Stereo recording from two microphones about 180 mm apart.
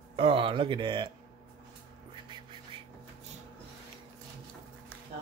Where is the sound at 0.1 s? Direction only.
30° right (ahead or behind).